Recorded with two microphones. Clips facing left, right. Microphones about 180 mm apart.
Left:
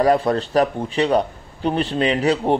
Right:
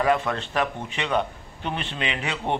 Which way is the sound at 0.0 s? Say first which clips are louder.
Left 6 dB; 35° left (ahead or behind).